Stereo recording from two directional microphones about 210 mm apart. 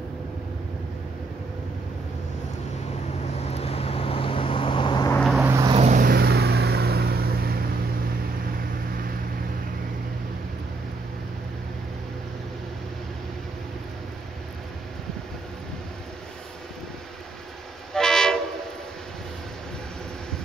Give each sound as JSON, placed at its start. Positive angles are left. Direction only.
{"t": 3.4, "sound": "vehicle", "side_deg": 30}
{"t": 5.2, "sound": "vehicle", "side_deg": 0}
{"t": 5.5, "sound": "vehicle", "side_deg": -15}
{"t": 5.8, "sound": "vehicle", "side_deg": -40}
{"t": 17.9, "sound": "train", "side_deg": 5}